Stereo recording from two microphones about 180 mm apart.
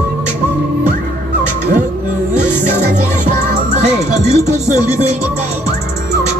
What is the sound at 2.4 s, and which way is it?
Music, 40° right (ahead or behind).